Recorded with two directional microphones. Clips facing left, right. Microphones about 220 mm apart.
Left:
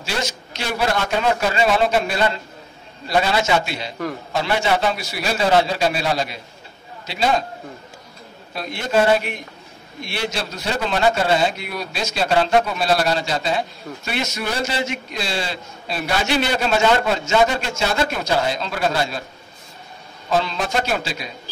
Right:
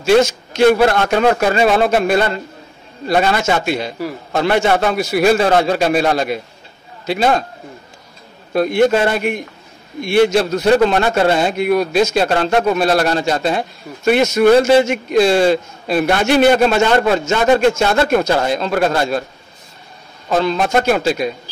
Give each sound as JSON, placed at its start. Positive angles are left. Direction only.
{"t": 0.0, "sound": "a man's voice", "side_deg": -50}
{"t": 8.5, "sound": "a man's voice", "side_deg": -55}
{"t": 20.2, "sound": "a man's voice", "side_deg": -55}